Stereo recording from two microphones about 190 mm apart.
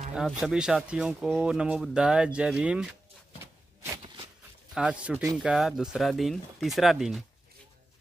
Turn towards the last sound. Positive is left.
turn(degrees=0)  # may be behind; listen again after turning